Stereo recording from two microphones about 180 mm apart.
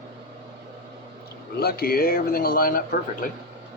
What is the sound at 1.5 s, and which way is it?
Speech, 60° left (ahead or behind).